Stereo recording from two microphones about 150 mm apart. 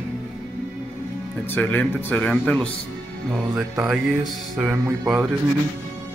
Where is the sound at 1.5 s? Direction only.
10° left (ahead or behind).